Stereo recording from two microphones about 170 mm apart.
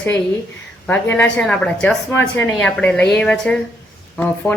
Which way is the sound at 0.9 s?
10° left (ahead or behind).